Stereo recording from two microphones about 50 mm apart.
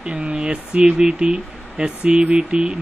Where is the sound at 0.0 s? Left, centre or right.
Right.